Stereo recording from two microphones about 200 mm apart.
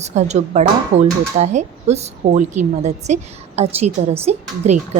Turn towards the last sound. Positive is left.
turn(degrees=-35)  # may be behind; listen again after turning